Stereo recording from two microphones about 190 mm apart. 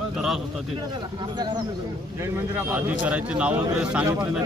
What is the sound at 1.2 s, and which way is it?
A man's voice, 20° right (ahead or behind).